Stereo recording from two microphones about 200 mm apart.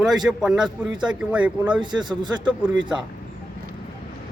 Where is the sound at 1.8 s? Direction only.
20° right (ahead or behind).